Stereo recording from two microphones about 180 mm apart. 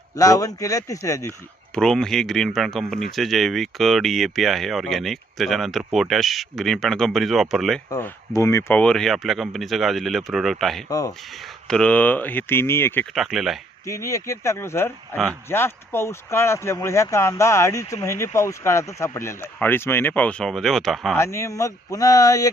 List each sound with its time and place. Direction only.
0.2 s a man's voice: 20° left (ahead or behind)
1.7 s speech: 5° left (ahead or behind)
7.9 s speech: 20° left (ahead or behind); by 10.8 s centre (ahead or behind)
10.8 s a man's voice: 20° left (ahead or behind)
11.7 s speech: 5° left (ahead or behind)
13.1 s speech: centre (ahead or behind)
13.8 s speech: 15° left (ahead or behind); by 21.2 s centre (ahead or behind)
21.2 s a man's voice: 15° left (ahead or behind)